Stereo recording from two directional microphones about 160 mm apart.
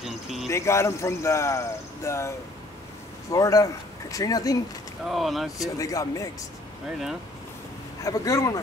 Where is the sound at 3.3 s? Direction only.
20° left (ahead or behind).